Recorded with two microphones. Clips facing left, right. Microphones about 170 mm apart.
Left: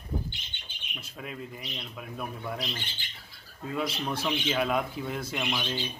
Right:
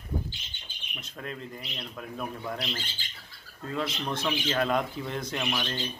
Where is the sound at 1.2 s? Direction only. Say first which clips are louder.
Right 1 dB; 5° left (ahead or behind).